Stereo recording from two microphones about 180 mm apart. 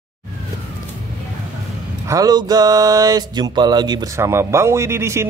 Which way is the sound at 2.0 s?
20° right (ahead or behind).